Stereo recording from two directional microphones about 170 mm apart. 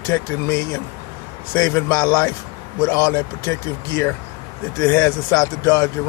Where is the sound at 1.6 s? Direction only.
20° left (ahead or behind).